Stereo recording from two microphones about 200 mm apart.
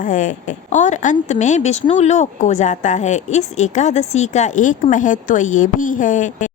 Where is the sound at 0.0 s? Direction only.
40° left (ahead or behind).